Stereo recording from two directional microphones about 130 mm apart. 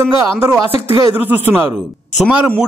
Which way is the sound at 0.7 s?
50° left (ahead or behind).